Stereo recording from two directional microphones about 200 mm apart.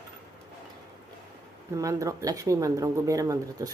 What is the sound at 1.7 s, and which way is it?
Speech, 15° right (ahead or behind).